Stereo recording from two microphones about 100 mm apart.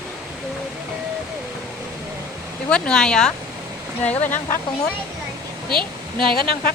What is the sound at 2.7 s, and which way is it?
Speech, 10° left (ahead or behind).